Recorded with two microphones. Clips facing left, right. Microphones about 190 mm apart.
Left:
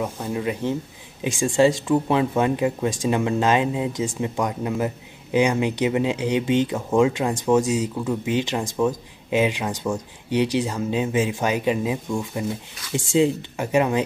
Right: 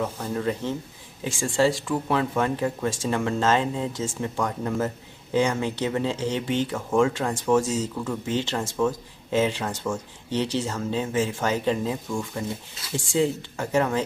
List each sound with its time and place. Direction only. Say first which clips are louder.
0.0 s speech: left 1 dB; 10° left (ahead or behind)